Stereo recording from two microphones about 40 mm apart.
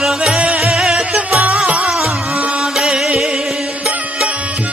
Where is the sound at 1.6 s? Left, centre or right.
Right.